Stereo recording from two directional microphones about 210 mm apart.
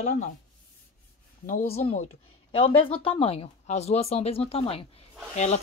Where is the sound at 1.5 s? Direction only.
40° left (ahead or behind).